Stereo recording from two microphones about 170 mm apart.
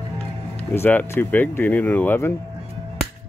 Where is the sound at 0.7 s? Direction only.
10° left (ahead or behind).